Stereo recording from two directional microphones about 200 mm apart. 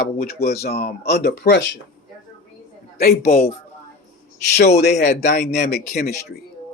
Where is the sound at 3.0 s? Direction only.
50° left (ahead or behind).